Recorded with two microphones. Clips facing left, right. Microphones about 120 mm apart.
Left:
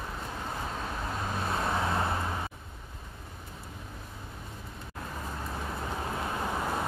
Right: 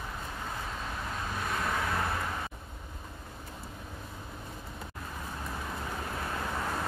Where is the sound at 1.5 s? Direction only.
30° left (ahead or behind).